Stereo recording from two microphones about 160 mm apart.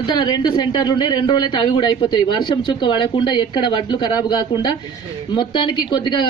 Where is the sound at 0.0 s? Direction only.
30° left (ahead or behind).